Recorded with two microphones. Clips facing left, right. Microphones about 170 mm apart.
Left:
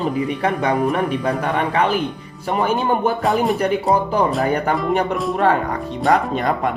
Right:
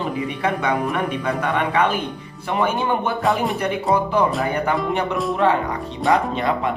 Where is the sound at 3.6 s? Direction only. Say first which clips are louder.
Left 2 dB; 40° left (ahead or behind).